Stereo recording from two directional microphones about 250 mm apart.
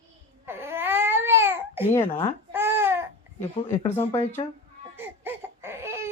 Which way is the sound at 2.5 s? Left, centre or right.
Centre.